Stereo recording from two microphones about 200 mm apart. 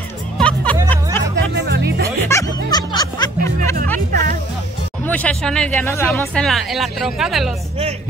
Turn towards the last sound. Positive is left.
turn(degrees=0)  # may be behind; listen again after turning